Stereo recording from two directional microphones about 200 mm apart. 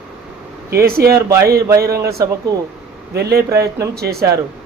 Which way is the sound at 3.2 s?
55° right (ahead or behind).